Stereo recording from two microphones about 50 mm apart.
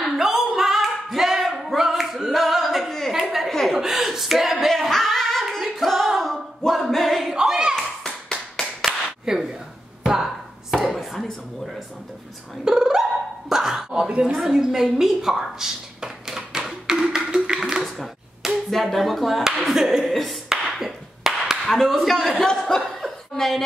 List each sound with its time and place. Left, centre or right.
0.0 s singing: centre
3.4 s chuckle: centre
3.8 s singing: centre
7.3 s clapping: centre
8.0 s clapping: centre
9.2 s a sound: centre
10.9 s chopping: centre
12.6 s dog: centre
13.5 s a sound: centre
17.0 s music: centre
17.8 s a sound: centre
19.6 s clapping: centre
21.6 s a sound: centre
22.4 s chuckle: centre